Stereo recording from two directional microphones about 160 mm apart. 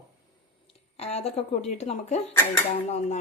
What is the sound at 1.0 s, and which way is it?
A woman's voice, 40° left (ahead or behind).